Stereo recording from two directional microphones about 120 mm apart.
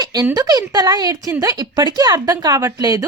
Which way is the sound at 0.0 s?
35° right (ahead or behind).